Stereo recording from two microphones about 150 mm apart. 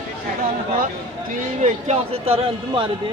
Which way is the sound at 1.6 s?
45° right (ahead or behind).